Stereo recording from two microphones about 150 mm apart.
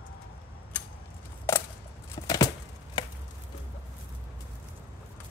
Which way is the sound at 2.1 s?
25° left (ahead or behind).